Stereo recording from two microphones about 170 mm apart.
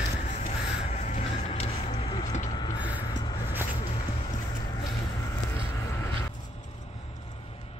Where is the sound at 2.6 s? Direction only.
25° left (ahead or behind).